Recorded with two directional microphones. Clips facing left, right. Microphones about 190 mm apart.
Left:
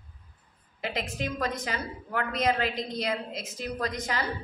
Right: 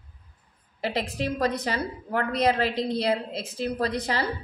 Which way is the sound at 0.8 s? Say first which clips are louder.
Right 4 dB; 35° right (ahead or behind).